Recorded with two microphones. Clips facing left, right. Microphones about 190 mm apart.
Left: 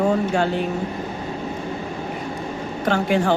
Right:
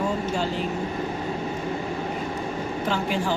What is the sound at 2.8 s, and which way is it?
Speech, 65° left (ahead or behind).